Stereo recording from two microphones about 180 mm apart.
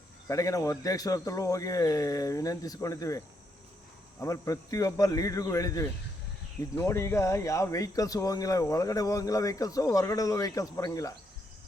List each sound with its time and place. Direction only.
0.3 s speech: 20° left (ahead or behind)